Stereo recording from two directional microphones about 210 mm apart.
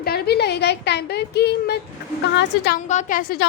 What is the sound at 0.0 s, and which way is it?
A woman's voice, 50° left (ahead or behind).